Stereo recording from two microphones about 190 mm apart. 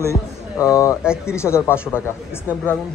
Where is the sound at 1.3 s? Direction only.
15° left (ahead or behind).